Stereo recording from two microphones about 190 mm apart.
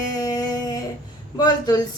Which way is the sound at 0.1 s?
20° left (ahead or behind).